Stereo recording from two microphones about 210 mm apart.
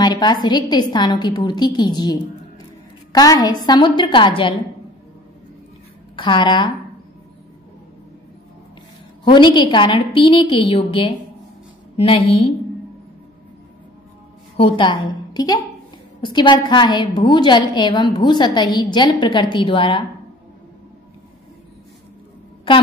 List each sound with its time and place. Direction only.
0.0 s a woman's voice: 20° left (ahead or behind)
6.1 s a woman's voice: 20° left (ahead or behind)
9.2 s a woman's voice: 20° left (ahead or behind)
14.6 s a woman's voice: 25° left (ahead or behind)